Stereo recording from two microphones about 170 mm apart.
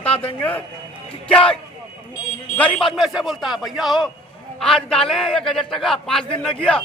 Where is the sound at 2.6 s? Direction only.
5° left (ahead or behind).